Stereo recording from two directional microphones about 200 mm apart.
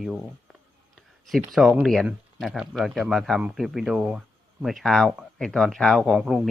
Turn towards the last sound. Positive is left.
turn(degrees=-5)  # may be behind; listen again after turning